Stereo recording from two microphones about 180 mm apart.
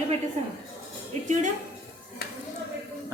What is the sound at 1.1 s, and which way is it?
Speech, 40° right (ahead or behind).